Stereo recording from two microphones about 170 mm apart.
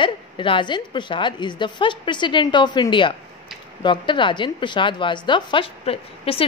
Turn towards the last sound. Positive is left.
turn(degrees=35)  # may be behind; listen again after turning